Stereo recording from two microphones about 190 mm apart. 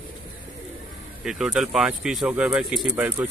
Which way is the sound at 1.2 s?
Centre (ahead or behind).